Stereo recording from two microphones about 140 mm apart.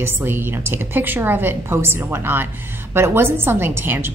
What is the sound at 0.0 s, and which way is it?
A woman's voice, 15° right (ahead or behind).